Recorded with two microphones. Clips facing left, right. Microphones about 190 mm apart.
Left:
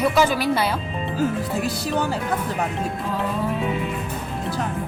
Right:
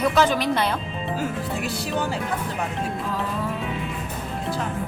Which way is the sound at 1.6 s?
40° left (ahead or behind).